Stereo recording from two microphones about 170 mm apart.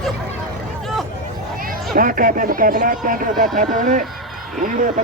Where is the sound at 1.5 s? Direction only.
55° right (ahead or behind).